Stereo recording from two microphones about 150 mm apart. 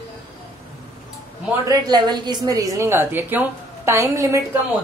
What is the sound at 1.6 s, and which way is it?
A woman's voice, 25° right (ahead or behind).